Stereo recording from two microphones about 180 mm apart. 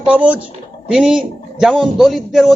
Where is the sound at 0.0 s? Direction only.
5° right (ahead or behind).